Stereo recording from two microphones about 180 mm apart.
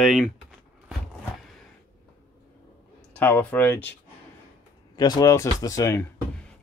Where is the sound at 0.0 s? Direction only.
Centre (ahead or behind).